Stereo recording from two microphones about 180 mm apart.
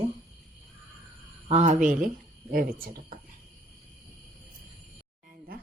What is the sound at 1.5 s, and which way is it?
Speech, 40° right (ahead or behind).